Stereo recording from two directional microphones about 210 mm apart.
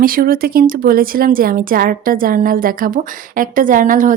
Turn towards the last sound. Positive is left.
turn(degrees=-40)  # may be behind; listen again after turning